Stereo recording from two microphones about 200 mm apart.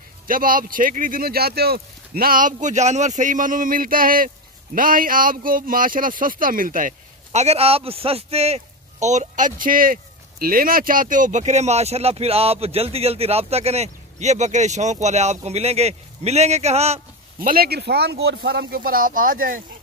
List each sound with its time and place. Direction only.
0.3 s speech: 45° right (ahead or behind)
17.4 s speech: 50° right (ahead or behind)